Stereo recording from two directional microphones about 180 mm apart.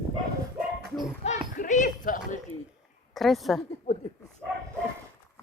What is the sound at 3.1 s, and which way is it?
Speech, centre (ahead or behind).